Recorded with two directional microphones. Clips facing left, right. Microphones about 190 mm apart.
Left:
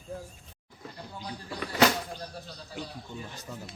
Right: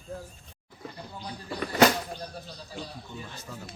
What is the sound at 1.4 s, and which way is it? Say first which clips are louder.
Speech: right 3 dB; 45° right (ahead or behind).